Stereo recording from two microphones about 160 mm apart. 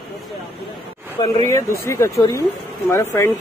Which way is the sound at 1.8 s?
20° left (ahead or behind).